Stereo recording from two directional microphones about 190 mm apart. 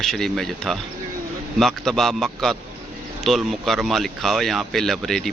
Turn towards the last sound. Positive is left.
turn(degrees=0)  # may be behind; listen again after turning